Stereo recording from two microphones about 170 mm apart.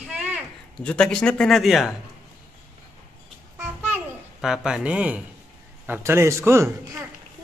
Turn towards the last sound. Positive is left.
turn(degrees=-15)  # may be behind; listen again after turning